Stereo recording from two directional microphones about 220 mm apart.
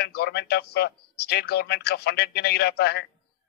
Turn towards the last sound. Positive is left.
turn(degrees=50)  # may be behind; listen again after turning